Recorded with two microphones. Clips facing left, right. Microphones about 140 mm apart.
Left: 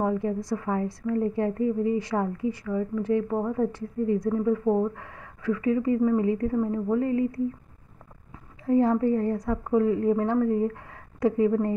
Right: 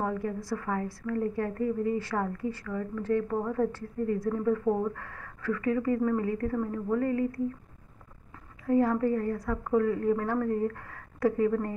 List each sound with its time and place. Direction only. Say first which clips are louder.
0.0 s a woman's voice: left 5 dB; 20° left (ahead or behind)
8.6 s a woman's voice: left 3 dB; 25° left (ahead or behind)